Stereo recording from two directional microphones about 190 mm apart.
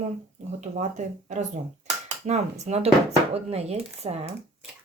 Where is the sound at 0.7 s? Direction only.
40° right (ahead or behind).